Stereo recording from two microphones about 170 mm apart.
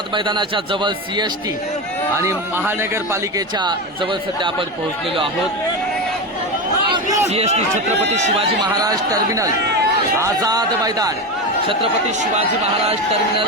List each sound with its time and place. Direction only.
0.1 s a man's voice: 25° right (ahead or behind)
2.1 s a man's voice: 15° right (ahead or behind)
3.6 s a man's voice: 25° right (ahead or behind)
6.9 s a sound: 20° right (ahead or behind)
7.3 s speech: 40° right (ahead or behind)
8.6 s a man's voice: 20° right (ahead or behind)